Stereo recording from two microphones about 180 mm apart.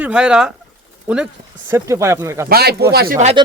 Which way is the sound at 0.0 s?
5° right (ahead or behind).